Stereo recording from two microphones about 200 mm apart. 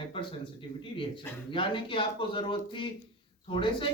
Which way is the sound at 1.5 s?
25° left (ahead or behind).